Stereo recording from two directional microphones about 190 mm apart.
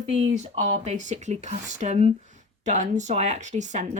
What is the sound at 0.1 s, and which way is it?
Speech, 35° right (ahead or behind).